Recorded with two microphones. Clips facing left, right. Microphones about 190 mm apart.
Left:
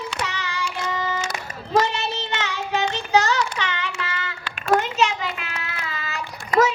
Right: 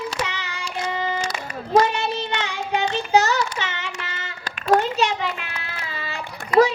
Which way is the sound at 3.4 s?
25° right (ahead or behind).